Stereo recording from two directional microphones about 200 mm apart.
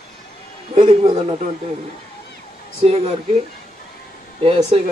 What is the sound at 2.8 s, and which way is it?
Speech, 30° right (ahead or behind).